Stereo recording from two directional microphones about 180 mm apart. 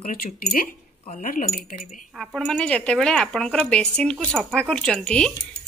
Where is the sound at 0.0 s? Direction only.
50° left (ahead or behind).